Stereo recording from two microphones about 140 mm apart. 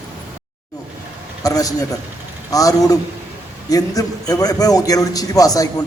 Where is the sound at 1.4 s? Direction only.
25° left (ahead or behind).